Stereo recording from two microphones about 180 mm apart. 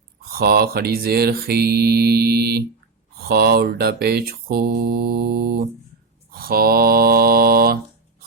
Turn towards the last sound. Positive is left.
turn(degrees=-55)  # may be behind; listen again after turning